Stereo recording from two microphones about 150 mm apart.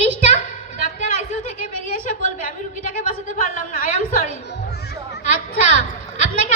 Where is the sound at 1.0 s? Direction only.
55° left (ahead or behind).